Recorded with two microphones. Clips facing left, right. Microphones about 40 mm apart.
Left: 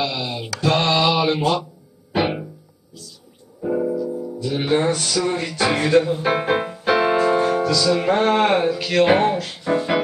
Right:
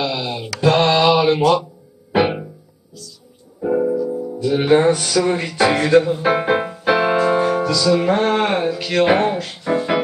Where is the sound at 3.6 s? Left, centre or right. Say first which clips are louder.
Right 4 dB; centre.